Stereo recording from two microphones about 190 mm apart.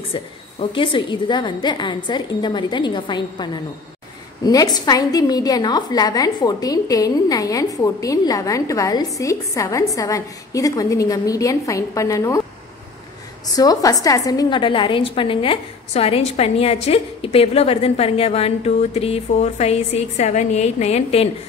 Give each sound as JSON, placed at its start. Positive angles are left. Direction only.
{"t": 0.1, "sound": "a woman's voice", "side_deg": 25}
{"t": 4.5, "sound": "a woman's voice", "side_deg": 20}
{"t": 13.6, "sound": "a woman's voice", "side_deg": 20}